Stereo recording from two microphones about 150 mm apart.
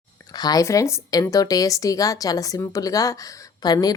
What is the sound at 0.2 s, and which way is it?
A woman's voice, 25° left (ahead or behind).